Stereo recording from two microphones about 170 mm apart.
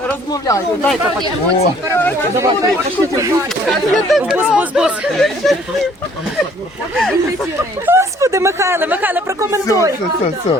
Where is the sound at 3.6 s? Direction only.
Centre (ahead or behind).